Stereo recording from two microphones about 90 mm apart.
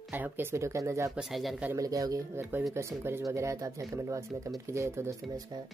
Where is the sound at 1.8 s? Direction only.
40° right (ahead or behind).